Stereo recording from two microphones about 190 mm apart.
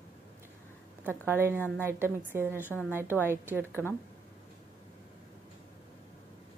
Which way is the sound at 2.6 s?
10° left (ahead or behind).